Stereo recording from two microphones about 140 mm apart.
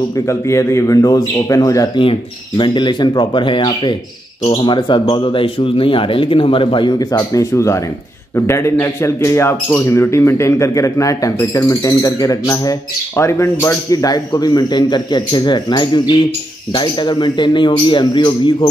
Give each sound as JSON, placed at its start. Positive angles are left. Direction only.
{"t": 0.3, "sound": "speech", "side_deg": 20}
{"t": 2.0, "sound": "speech", "side_deg": 35}